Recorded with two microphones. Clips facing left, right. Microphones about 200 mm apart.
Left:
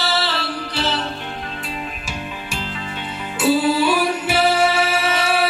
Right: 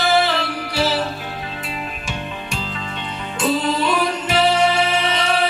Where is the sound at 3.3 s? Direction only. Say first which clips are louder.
Left 3 dB; 5° left (ahead or behind).